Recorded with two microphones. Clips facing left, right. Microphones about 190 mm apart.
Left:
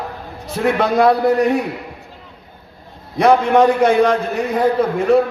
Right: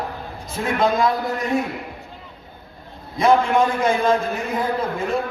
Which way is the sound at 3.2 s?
70° left (ahead or behind).